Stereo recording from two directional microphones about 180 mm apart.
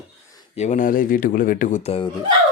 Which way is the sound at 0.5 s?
40° left (ahead or behind).